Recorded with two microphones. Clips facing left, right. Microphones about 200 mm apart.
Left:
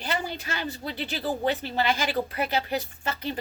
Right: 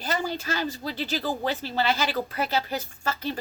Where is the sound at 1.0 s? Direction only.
20° left (ahead or behind).